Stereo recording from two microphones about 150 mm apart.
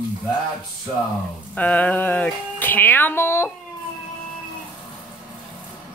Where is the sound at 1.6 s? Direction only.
10° left (ahead or behind).